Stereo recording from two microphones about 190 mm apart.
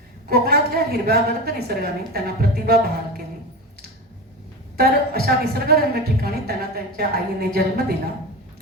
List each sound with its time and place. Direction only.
0.3 s a man's voice: 55° right (ahead or behind)
4.8 s a man's voice: 55° right (ahead or behind)